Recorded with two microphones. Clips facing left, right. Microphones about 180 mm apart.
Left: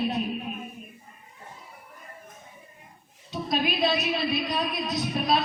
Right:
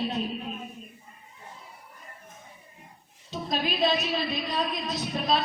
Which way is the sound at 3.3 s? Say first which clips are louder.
Left 2 dB; 15° left (ahead or behind).